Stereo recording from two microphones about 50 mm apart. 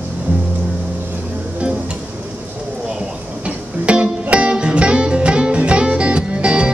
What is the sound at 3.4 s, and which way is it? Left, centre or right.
Music, right.